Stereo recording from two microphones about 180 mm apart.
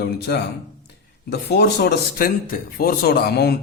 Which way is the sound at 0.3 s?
65° left (ahead or behind).